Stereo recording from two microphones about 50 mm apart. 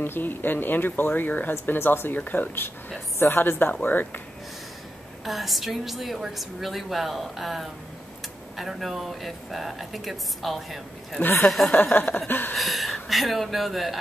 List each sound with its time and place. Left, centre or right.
0.0 s speech: left
5.2 s speech: centre
11.7 s speech: left
12.5 s speech: centre